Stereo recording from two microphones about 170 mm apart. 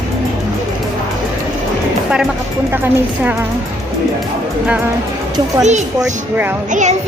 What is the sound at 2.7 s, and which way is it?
Speech, 10° right (ahead or behind).